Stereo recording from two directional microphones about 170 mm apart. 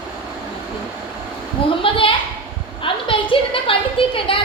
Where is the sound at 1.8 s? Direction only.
30° left (ahead or behind).